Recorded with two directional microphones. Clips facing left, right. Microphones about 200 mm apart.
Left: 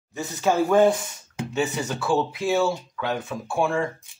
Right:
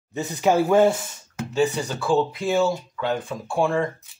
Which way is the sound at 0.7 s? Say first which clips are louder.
Right 1 dB; 5° right (ahead or behind).